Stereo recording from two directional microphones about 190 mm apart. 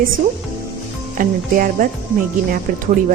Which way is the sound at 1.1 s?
45° right (ahead or behind).